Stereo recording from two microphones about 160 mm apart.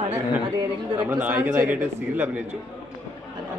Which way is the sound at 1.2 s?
10° right (ahead or behind).